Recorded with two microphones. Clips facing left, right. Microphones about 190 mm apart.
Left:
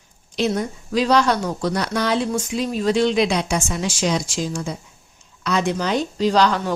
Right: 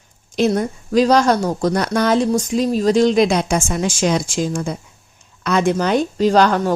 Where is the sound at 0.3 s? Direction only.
50° right (ahead or behind).